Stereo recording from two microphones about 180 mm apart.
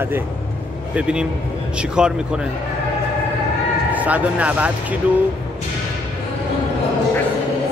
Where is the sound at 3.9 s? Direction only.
10° right (ahead or behind).